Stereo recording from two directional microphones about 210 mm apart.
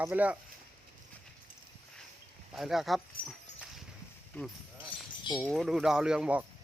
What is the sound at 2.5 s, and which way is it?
Speech, centre (ahead or behind).